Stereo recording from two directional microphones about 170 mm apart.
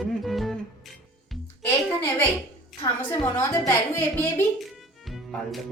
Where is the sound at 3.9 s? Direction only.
15° left (ahead or behind).